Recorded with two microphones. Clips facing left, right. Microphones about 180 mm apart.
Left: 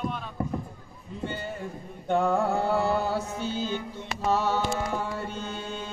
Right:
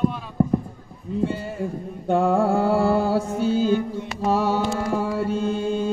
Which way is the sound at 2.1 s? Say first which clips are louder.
Right 5 dB; 30° right (ahead or behind).